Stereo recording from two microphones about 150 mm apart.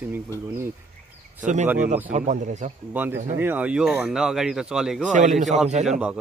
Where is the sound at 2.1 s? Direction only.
55° right (ahead or behind).